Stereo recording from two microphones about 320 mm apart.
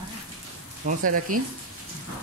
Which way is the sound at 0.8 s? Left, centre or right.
Right.